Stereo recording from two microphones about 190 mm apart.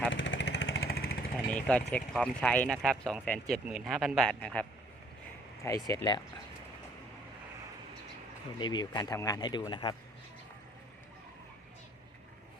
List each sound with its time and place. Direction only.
0.1 s vehicle: 75° left (ahead or behind); by 1.2 s 55° left (ahead or behind)
1.5 s speech: 5° left (ahead or behind)
5.6 s speech: 15° left (ahead or behind)
8.5 s speech: 25° left (ahead or behind)